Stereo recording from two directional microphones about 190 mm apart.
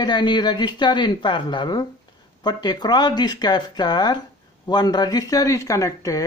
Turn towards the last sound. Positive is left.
turn(degrees=15)  # may be behind; listen again after turning